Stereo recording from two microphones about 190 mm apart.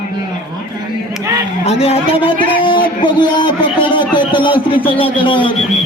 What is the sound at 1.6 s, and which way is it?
A man's voice, 30° left (ahead or behind).